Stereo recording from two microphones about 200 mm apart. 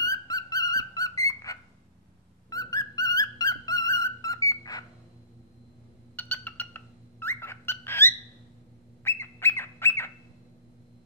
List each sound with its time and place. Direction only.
0.0 s whistle: 15° left (ahead or behind)
2.5 s music: 20° left (ahead or behind)
6.1 s a sound: 10° left (ahead or behind)
9.0 s squawk: 10° left (ahead or behind)